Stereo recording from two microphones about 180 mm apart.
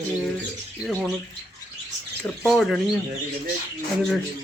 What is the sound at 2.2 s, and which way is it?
Speech, centre (ahead or behind).